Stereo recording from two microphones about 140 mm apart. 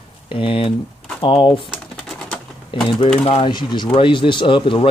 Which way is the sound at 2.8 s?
35° left (ahead or behind).